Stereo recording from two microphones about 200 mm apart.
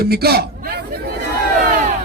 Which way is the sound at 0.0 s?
50° right (ahead or behind).